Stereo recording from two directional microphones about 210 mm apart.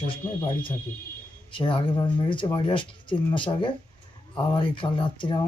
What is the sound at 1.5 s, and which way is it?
Speech, 25° left (ahead or behind).